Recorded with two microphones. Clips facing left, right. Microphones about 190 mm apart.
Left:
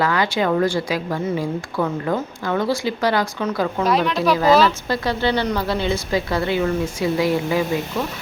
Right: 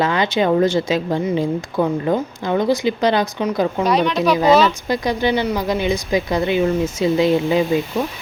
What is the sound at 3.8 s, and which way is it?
Speech, centre (ahead or behind).